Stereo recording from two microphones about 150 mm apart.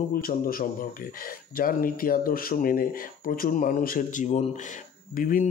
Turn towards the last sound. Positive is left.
turn(degrees=65)  # may be behind; listen again after turning